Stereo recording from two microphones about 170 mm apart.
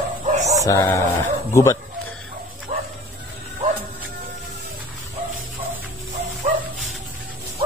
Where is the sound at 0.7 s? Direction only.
15° left (ahead or behind).